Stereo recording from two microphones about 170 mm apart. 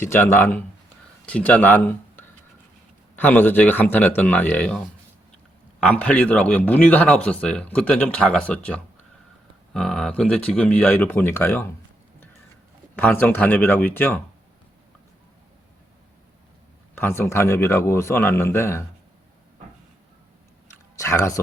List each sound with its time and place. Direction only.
0.0 s a man's voice: 15° left (ahead or behind)
5.8 s a man's voice: 10° left (ahead or behind)
13.0 s a man's voice: 10° left (ahead or behind)
17.0 s a man's voice: 15° left (ahead or behind)
20.9 s speech: 20° left (ahead or behind)